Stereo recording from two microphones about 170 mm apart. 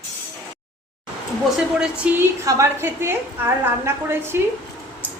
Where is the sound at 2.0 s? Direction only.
5° right (ahead or behind).